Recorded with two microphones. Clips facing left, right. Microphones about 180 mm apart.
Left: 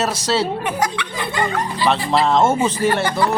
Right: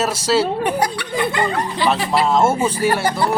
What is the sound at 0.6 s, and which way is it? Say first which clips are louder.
Speech: right 2 dB; 35° right (ahead or behind).